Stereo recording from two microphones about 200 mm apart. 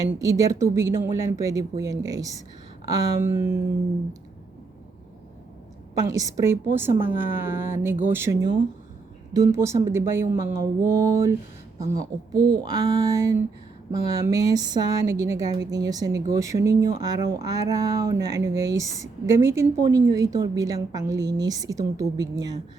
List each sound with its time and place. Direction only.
0.1 s speech: 15° right (ahead or behind)
6.0 s speech: 15° right (ahead or behind)